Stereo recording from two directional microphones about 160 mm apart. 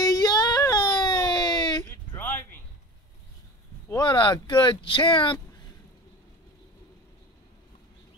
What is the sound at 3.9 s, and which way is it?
Speech, 25° left (ahead or behind).